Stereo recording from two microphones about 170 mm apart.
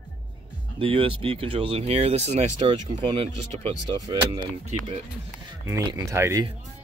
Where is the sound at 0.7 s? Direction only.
30° right (ahead or behind).